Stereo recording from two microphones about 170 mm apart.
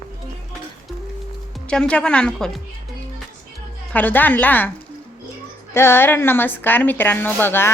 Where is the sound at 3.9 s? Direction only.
10° left (ahead or behind).